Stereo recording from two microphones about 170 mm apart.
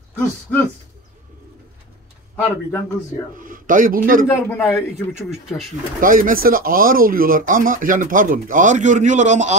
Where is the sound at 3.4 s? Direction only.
55° right (ahead or behind).